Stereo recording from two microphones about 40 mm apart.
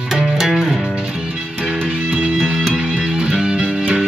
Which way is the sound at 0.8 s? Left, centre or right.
Right.